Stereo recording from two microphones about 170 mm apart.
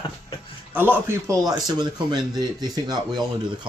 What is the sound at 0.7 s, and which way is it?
A man's voice, 10° right (ahead or behind).